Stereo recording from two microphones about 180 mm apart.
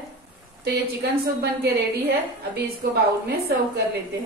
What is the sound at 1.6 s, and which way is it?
A woman's voice, 65° right (ahead or behind).